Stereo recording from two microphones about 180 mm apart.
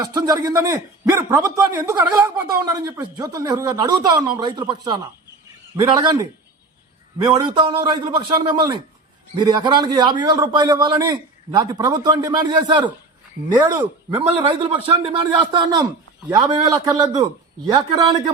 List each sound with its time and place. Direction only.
0.0 s a man's voice: 20° right (ahead or behind)
7.4 s a man's voice: 25° right (ahead or behind)